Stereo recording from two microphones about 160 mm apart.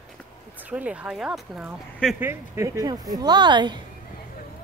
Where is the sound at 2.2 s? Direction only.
15° right (ahead or behind).